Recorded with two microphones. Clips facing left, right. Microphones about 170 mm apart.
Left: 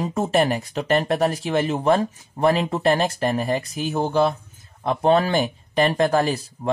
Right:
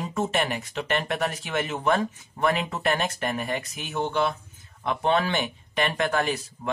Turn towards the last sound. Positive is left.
turn(degrees=35)  # may be behind; listen again after turning